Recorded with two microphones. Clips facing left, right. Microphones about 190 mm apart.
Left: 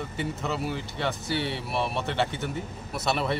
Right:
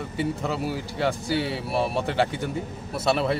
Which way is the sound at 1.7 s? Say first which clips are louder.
Right 5 dB; 35° right (ahead or behind).